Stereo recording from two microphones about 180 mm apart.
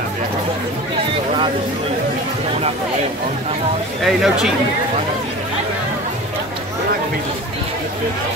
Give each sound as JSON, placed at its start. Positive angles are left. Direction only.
{"t": 4.0, "sound": "speech", "side_deg": 0}